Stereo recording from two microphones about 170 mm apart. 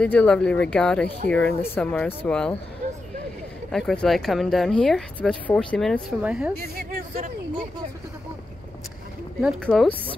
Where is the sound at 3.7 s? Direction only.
Centre (ahead or behind).